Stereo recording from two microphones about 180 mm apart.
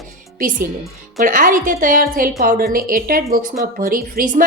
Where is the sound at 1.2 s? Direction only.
45° right (ahead or behind).